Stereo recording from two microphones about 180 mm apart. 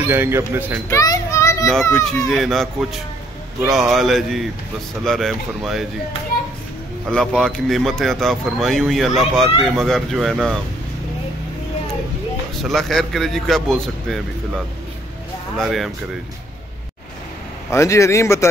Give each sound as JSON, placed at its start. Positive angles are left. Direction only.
{"t": 0.1, "sound": "a man's voice", "side_deg": -15}
{"t": 0.8, "sound": "children playing", "side_deg": 20}
{"t": 2.0, "sound": "speech", "side_deg": 0}
{"t": 7.1, "sound": "speech", "side_deg": 5}
{"t": 12.6, "sound": "speech", "side_deg": 0}
{"t": 15.6, "sound": "speech", "side_deg": 0}
{"t": 17.6, "sound": "speech", "side_deg": 15}